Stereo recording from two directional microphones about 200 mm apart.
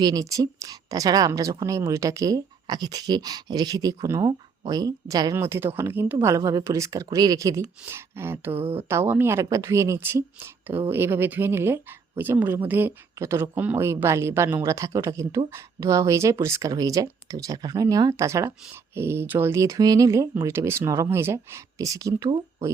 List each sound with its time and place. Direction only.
0.0 s a woman's voice: 20° right (ahead or behind)